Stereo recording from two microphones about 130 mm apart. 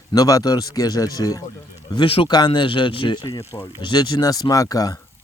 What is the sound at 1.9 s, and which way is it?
Speech, 45° left (ahead or behind).